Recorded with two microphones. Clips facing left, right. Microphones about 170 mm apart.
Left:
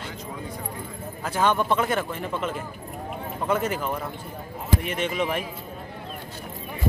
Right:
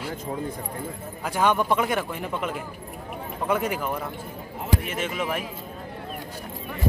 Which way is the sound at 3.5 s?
10° right (ahead or behind).